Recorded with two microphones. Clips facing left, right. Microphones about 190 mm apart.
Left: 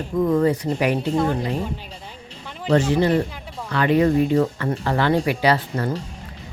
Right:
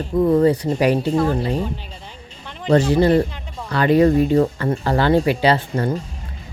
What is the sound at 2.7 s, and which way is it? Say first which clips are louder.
Speech: right 3 dB; 35° right (ahead or behind).